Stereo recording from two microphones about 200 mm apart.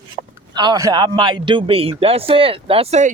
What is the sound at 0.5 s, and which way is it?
Speech, 20° right (ahead or behind).